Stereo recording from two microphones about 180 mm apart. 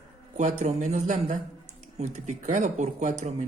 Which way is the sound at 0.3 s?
40° right (ahead or behind).